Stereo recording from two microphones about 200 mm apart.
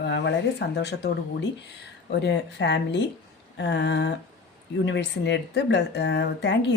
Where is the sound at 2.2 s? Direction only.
60° left (ahead or behind).